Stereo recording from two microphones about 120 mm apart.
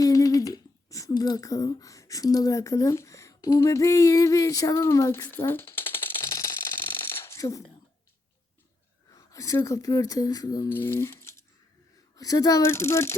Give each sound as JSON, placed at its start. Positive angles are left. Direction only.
{"t": 0.0, "sound": "speech", "side_deg": 30}
{"t": 6.9, "sound": "mechanisms", "side_deg": 20}
{"t": 9.1, "sound": "speech", "side_deg": 30}
{"t": 10.7, "sound": "speech", "side_deg": 20}